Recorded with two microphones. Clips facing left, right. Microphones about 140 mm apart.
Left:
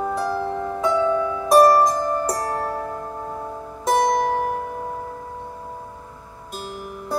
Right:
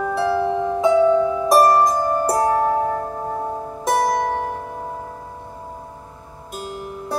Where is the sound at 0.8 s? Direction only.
5° right (ahead or behind).